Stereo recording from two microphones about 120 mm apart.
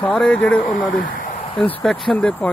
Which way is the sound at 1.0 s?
90° left.